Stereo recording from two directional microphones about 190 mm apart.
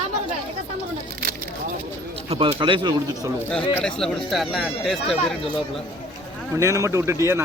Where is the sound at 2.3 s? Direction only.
30° right (ahead or behind).